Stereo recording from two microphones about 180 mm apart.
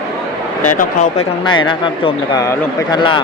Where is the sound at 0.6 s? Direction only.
45° left (ahead or behind).